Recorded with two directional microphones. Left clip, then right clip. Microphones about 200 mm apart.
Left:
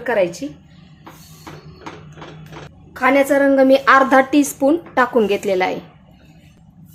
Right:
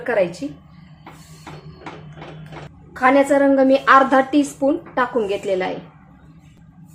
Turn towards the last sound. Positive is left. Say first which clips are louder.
# left 4 dB
turn(degrees=20)  # may be behind; listen again after turning